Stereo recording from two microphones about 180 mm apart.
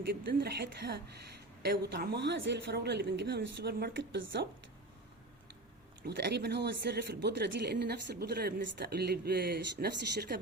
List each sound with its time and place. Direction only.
0.3 s a man's voice: 60° right (ahead or behind)
6.0 s a man's voice: 70° right (ahead or behind)